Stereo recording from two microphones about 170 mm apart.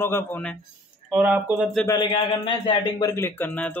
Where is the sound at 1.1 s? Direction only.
10° right (ahead or behind).